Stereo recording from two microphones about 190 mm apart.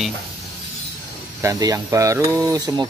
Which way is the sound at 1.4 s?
20° right (ahead or behind).